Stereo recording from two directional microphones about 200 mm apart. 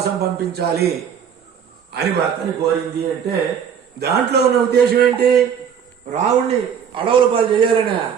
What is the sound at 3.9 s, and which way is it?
A man's voice, 55° right (ahead or behind).